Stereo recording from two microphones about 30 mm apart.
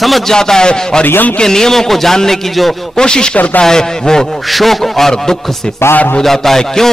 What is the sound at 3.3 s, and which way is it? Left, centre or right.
Speech, left.